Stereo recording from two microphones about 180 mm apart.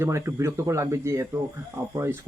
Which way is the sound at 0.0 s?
15° right (ahead or behind).